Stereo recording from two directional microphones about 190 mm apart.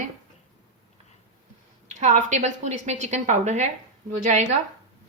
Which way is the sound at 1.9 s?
40° right (ahead or behind).